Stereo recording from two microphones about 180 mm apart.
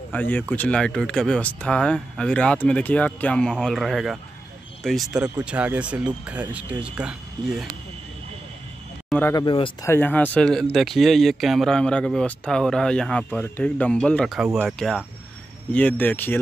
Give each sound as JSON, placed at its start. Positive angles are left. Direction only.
{"t": 0.1, "sound": "speech", "side_deg": 10}
{"t": 9.3, "sound": "speech", "side_deg": 25}
{"t": 9.8, "sound": "speech", "side_deg": 10}